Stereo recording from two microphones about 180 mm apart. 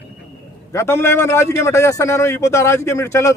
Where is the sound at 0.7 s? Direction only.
15° left (ahead or behind).